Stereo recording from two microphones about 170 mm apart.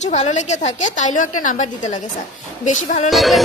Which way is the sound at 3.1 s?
Centre (ahead or behind).